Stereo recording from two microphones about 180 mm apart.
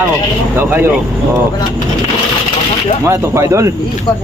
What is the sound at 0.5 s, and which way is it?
Speech, 10° right (ahead or behind).